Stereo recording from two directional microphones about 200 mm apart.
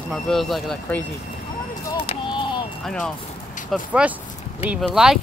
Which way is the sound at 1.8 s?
30° left (ahead or behind).